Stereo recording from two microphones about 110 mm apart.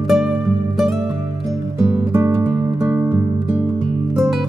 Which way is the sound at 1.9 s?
25° right (ahead or behind).